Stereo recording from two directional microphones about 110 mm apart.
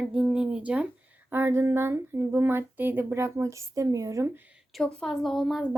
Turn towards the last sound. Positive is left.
turn(degrees=0)  # may be behind; listen again after turning